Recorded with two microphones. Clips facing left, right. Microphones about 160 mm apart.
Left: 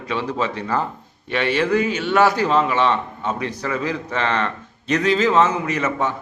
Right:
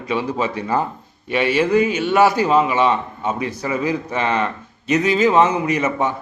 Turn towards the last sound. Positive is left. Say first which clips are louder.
# right 3 dB
turn(degrees=-15)  # may be behind; listen again after turning